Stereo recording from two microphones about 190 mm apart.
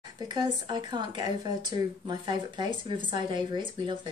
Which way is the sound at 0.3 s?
25° right (ahead or behind).